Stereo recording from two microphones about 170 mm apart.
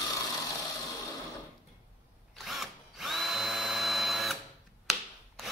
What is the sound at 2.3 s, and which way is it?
Drill, centre (ahead or behind).